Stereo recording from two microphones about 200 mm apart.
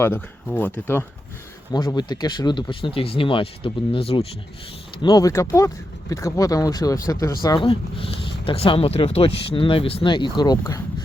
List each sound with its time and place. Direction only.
0.0 s speech: 10° left (ahead or behind)
1.7 s speech: 20° left (ahead or behind)
5.0 s speech: 15° left (ahead or behind)